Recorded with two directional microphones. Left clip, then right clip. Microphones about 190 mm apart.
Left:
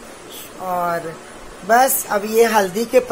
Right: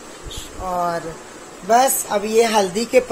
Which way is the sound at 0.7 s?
15° left (ahead or behind).